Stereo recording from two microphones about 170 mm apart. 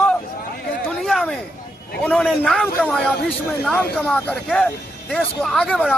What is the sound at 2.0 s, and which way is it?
Speech, 5° left (ahead or behind).